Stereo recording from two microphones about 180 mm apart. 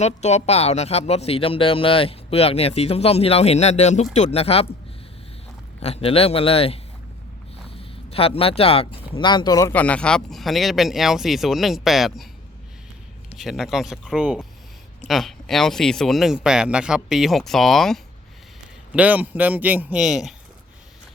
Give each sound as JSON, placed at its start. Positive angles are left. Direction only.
{"t": 0.0, "sound": "speech", "side_deg": 40}
{"t": 5.8, "sound": "speech", "side_deg": 35}
{"t": 9.7, "sound": "speech", "side_deg": 5}
{"t": 13.3, "sound": "a man's voice", "side_deg": 0}